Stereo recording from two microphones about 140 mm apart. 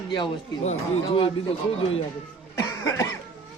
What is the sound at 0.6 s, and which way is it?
Speech, 40° left (ahead or behind).